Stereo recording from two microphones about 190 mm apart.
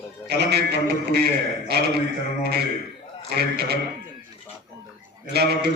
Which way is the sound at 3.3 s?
55° right (ahead or behind).